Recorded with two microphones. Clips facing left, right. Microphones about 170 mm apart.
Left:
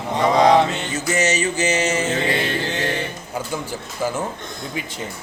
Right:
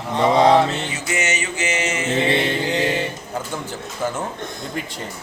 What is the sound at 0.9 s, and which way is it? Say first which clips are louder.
Music: left 4 dB; 40° left (ahead or behind).